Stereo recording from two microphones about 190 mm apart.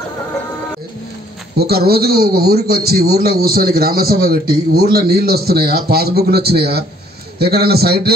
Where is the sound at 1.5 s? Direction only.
55° right (ahead or behind).